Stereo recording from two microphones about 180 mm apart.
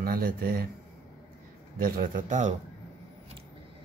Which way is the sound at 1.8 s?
55° right (ahead or behind).